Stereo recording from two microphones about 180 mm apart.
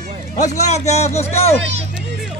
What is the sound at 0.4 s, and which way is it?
A man's voice, 40° left (ahead or behind).